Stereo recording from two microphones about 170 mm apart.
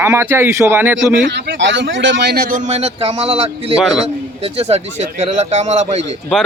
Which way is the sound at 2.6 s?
40° right (ahead or behind).